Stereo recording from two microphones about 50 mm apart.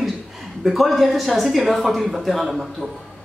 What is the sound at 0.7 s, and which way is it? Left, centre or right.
Speech, centre.